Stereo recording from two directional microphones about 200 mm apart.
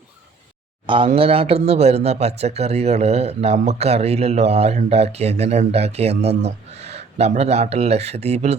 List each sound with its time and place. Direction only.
0.9 s speech: 25° right (ahead or behind)